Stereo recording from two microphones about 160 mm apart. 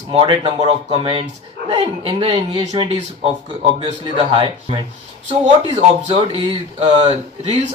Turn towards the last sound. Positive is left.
turn(degrees=-40)  # may be behind; listen again after turning